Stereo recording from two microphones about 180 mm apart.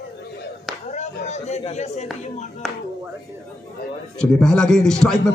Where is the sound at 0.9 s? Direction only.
40° left (ahead or behind).